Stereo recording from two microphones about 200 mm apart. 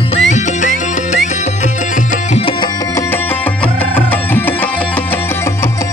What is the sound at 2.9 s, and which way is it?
Music, 10° left (ahead or behind).